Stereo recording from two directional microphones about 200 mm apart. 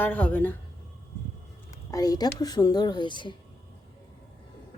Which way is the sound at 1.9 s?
20° left (ahead or behind).